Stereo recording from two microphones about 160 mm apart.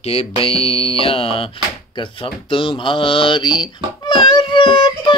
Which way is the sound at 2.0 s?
35° left (ahead or behind).